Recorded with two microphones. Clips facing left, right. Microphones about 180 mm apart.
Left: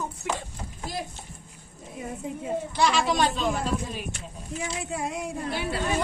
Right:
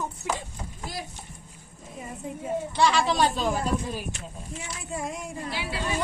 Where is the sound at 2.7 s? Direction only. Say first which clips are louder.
Right 1 dB; 5° left (ahead or behind).